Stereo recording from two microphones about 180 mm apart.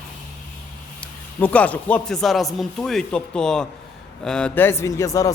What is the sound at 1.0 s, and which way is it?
A man's voice, 10° left (ahead or behind).